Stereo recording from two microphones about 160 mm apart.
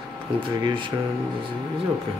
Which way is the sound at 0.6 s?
30° right (ahead or behind).